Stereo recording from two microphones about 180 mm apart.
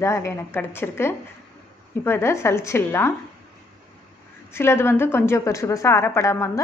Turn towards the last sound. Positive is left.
turn(degrees=15)  # may be behind; listen again after turning